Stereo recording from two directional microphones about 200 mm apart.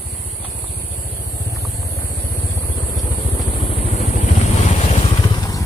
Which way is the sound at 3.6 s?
30° left (ahead or behind).